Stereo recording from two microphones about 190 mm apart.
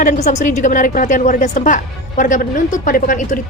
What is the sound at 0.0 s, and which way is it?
A woman's voice, 45° left (ahead or behind).